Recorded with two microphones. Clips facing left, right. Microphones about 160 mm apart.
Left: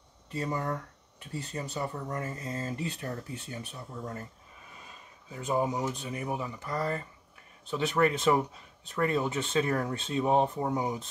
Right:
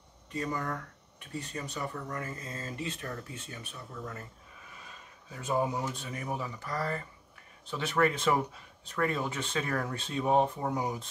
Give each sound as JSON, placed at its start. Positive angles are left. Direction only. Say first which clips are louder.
{"t": 0.3, "sound": "speech", "louder": "left 2 dB", "side_deg": 30}
{"t": 5.3, "sound": "speech", "louder": "left 1 dB", "side_deg": 20}